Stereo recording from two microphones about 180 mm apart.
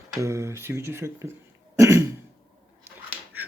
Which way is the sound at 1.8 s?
15° right (ahead or behind).